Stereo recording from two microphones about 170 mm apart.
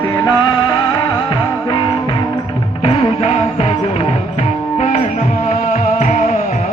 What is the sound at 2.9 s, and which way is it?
Music, 35° left (ahead or behind).